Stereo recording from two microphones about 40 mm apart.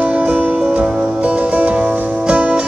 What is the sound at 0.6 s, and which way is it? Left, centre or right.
Music, centre.